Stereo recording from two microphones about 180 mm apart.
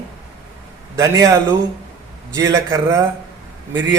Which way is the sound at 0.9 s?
20° right (ahead or behind).